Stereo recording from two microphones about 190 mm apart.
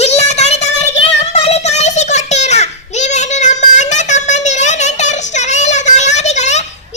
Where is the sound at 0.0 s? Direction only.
35° left (ahead or behind).